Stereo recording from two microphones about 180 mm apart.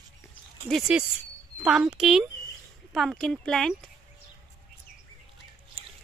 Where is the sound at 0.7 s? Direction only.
Centre (ahead or behind).